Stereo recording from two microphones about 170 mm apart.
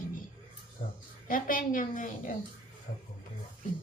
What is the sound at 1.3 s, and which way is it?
Speech, 55° left (ahead or behind).